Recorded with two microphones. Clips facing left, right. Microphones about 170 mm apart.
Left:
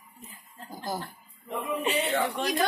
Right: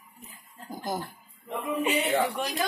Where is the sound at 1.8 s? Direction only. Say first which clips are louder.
Right 2 dB; 15° right (ahead or behind).